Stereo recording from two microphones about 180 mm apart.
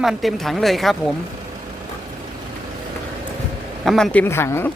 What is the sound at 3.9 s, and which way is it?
Speech, centre (ahead or behind).